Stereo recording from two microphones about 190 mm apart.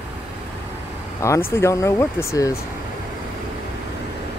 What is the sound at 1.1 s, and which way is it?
Speech, 15° left (ahead or behind).